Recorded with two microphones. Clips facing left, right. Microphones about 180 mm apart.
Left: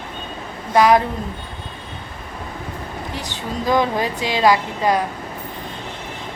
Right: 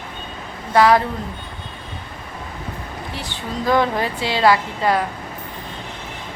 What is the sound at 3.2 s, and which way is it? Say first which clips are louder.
A woman's voice: even; 15° left (ahead or behind).